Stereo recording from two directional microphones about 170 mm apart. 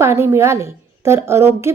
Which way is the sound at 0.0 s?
15° right (ahead or behind).